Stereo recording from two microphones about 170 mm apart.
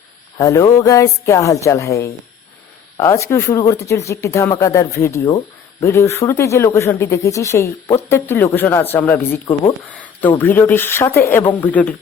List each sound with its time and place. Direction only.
0.3 s speech: 20° left (ahead or behind)